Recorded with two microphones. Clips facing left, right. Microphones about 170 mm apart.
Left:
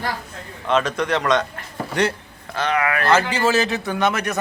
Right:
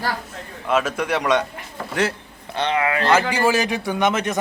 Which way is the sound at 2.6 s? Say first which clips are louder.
Even; 25° right (ahead or behind).